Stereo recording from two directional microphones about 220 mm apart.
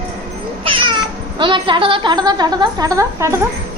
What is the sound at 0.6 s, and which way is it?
Cat, 25° right (ahead or behind).